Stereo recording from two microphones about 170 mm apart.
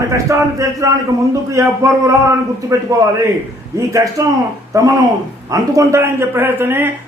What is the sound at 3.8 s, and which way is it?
A man's voice, 20° right (ahead or behind).